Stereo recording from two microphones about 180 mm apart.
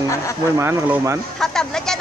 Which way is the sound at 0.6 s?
15° right (ahead or behind).